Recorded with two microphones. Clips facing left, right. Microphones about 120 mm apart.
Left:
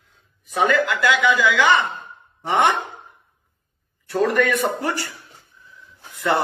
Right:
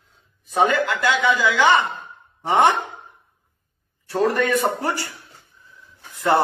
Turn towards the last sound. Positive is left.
turn(degrees=-35)  # may be behind; listen again after turning